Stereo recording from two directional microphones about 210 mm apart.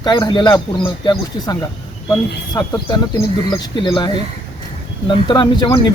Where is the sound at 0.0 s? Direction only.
20° left (ahead or behind).